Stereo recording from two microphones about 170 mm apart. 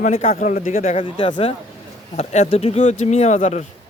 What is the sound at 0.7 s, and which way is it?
Speech, 40° left (ahead or behind).